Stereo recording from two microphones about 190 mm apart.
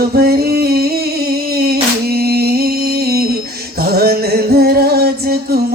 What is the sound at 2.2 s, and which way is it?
Music, 55° right (ahead or behind).